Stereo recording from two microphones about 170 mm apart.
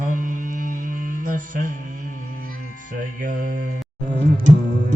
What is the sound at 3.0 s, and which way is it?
Music, 55° right (ahead or behind).